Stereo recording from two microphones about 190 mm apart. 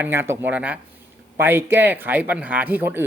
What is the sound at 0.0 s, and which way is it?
Speech, 10° right (ahead or behind).